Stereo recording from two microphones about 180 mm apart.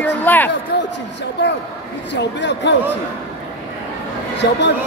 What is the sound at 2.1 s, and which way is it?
Speech, 75° left (ahead or behind).